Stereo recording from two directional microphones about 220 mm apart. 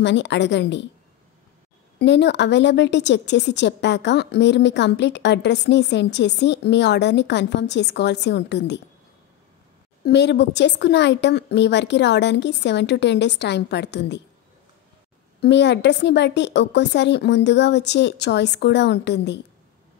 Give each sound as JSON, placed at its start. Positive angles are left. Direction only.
{"t": 0.0, "sound": "a woman's voice", "side_deg": 55}
{"t": 2.0, "sound": "a woman's voice", "side_deg": 50}
{"t": 10.0, "sound": "a woman's voice", "side_deg": 50}
{"t": 15.4, "sound": "a woman's voice", "side_deg": 50}